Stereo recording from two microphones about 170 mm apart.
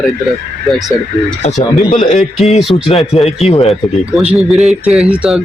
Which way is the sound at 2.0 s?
40° left (ahead or behind).